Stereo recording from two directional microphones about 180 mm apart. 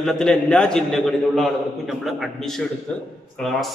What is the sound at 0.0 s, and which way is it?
A man's voice, 5° left (ahead or behind).